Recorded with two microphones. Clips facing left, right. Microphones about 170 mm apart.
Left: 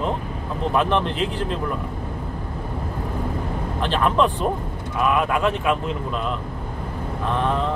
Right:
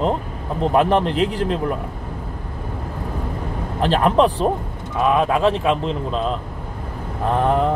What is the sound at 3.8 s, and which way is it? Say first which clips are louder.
Speech: right 4 dB; 40° right (ahead or behind).